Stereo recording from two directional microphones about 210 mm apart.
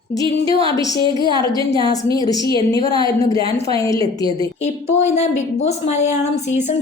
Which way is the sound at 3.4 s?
25° right (ahead or behind).